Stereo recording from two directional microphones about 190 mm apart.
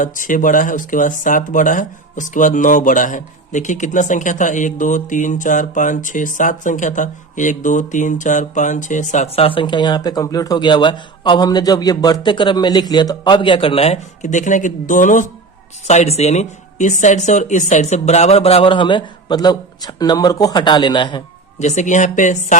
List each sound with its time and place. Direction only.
0.0 s speech: 45° left (ahead or behind); by 21.2 s 25° left (ahead or behind)
21.6 s speech: 40° left (ahead or behind)